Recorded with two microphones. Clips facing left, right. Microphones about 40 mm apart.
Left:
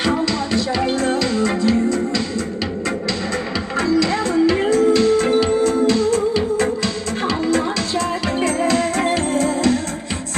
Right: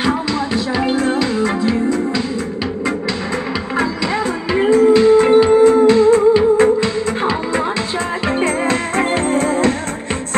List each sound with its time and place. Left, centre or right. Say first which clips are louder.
0.0 s music: right 1 dB; centre
3.7 s music: left 2 dB; centre
8.4 s music: left 1 dB; right